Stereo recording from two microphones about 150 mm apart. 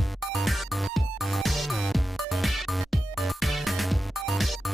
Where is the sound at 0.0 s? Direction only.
Centre (ahead or behind).